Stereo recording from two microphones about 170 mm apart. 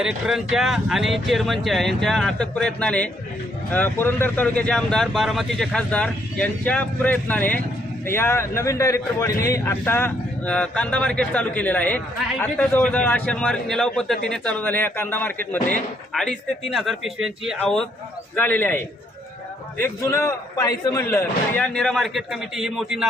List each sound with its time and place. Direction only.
0.0 s a man's voice: 5° right (ahead or behind)